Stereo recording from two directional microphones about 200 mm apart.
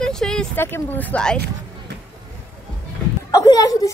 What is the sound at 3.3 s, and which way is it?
Speech, 20° left (ahead or behind).